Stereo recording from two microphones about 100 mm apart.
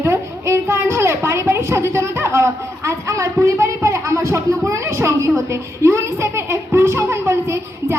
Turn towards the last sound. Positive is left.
turn(degrees=-25)  # may be behind; listen again after turning